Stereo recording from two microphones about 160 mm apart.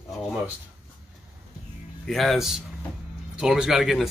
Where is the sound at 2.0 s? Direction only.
Centre (ahead or behind).